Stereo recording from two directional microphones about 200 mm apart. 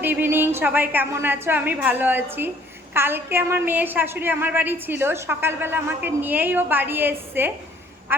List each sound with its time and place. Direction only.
0.0 s a woman's voice: 10° right (ahead or behind)